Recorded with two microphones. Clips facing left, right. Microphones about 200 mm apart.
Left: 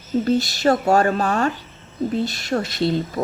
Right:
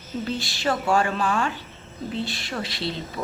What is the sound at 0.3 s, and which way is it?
A woman's voice, 40° left (ahead or behind).